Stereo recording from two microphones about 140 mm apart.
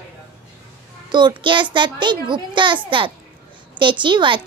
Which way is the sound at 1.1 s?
35° right (ahead or behind).